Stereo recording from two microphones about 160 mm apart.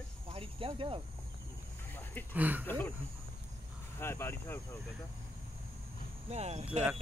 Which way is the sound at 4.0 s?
15° left (ahead or behind).